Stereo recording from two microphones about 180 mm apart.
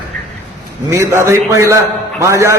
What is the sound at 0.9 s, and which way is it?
A man's voice, 15° right (ahead or behind).